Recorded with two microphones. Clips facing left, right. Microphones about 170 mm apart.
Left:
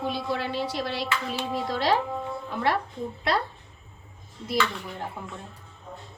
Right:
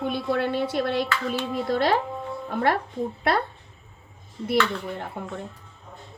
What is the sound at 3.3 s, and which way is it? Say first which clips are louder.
Speech: right 2 dB; 55° right (ahead or behind).